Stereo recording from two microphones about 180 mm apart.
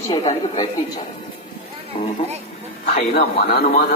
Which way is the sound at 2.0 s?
30° left (ahead or behind).